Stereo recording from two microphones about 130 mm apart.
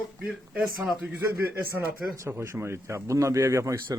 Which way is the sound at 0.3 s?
5° right (ahead or behind).